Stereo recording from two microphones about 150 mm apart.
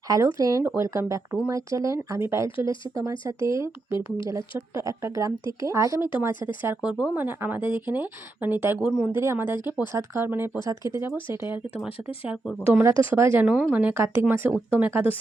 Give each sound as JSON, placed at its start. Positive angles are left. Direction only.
{"t": 0.1, "sound": "speech", "side_deg": -20}
{"t": 11.3, "sound": "speech", "side_deg": 35}
{"t": 12.8, "sound": "speech", "side_deg": -15}